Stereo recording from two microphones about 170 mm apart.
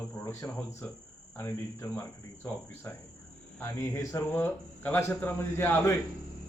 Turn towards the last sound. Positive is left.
turn(degrees=10)  # may be behind; listen again after turning